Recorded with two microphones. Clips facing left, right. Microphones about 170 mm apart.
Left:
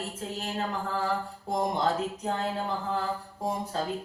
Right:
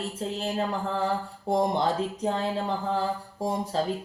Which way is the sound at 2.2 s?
30° right (ahead or behind).